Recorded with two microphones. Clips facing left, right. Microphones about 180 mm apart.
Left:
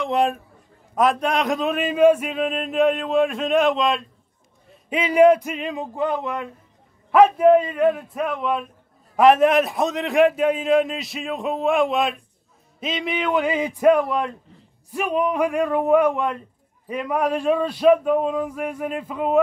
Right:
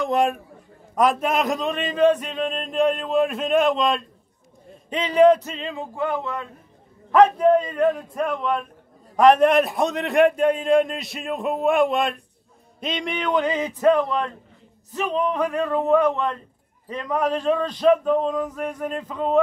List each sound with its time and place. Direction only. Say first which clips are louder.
0.0 s a man's voice: even; centre (ahead or behind)